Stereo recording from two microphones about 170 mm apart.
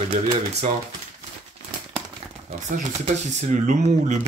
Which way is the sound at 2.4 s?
50° right (ahead or behind).